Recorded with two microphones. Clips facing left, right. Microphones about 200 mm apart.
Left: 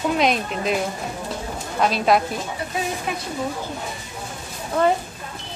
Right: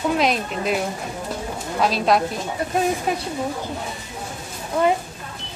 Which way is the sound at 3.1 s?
40° right (ahead or behind).